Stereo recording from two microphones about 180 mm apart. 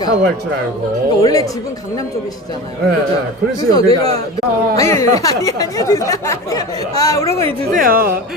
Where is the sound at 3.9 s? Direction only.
30° right (ahead or behind).